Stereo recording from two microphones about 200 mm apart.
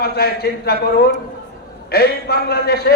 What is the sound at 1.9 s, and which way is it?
A man's voice, 50° left (ahead or behind).